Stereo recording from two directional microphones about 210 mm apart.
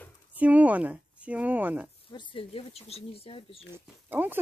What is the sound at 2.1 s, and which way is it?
Speech, 25° left (ahead or behind).